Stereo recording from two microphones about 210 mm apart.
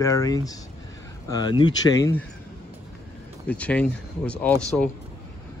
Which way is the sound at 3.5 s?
5° left (ahead or behind).